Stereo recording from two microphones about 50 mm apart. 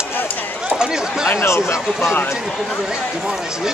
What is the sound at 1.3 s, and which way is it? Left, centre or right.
Speech, left.